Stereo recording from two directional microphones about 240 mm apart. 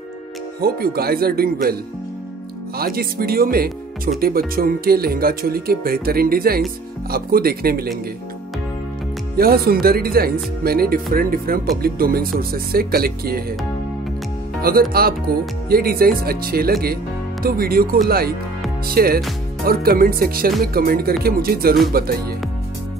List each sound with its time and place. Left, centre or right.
0.6 s speech: right
2.8 s speech: right
9.4 s speech: right
14.6 s speech: right